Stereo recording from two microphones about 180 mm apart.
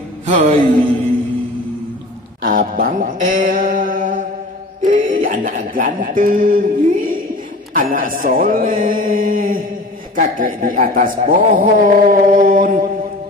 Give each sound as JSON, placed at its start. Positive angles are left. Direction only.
{"t": 0.3, "sound": "a sound", "side_deg": -35}
{"t": 2.4, "sound": "a man's voice", "side_deg": -50}
{"t": 4.8, "sound": "music", "side_deg": -50}
{"t": 7.7, "sound": "a man's voice", "side_deg": -50}